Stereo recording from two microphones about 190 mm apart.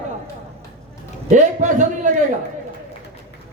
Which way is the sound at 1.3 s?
40° right (ahead or behind).